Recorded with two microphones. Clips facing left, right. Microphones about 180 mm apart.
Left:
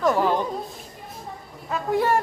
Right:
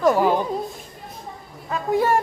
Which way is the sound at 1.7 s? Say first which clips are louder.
Right 2 dB; 5° right (ahead or behind).